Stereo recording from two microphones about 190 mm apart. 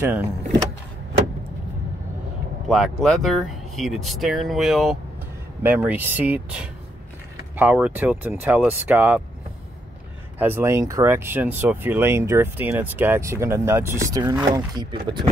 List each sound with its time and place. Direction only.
0.0 s speech: 10° right (ahead or behind)
2.7 s speech: centre (ahead or behind)
10.4 s speech: 10° right (ahead or behind)